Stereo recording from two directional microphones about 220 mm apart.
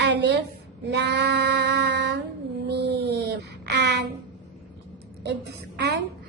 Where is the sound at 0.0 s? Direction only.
50° right (ahead or behind).